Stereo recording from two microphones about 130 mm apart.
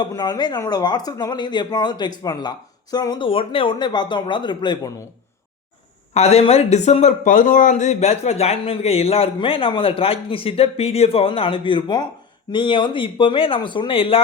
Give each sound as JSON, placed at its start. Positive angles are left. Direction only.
{"t": 0.0, "sound": "speech", "side_deg": 30}
{"t": 6.1, "sound": "speech", "side_deg": 55}